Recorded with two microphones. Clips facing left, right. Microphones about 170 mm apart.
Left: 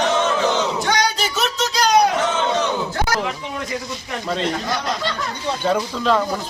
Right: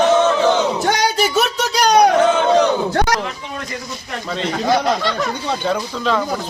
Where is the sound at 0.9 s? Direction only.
50° right (ahead or behind).